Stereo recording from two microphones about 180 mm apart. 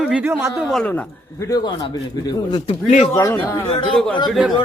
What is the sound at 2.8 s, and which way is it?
Speech, 40° left (ahead or behind).